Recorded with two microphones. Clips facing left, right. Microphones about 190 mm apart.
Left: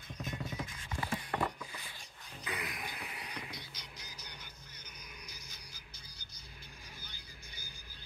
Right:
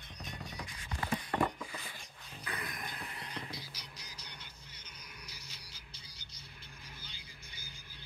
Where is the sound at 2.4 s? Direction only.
10° left (ahead or behind).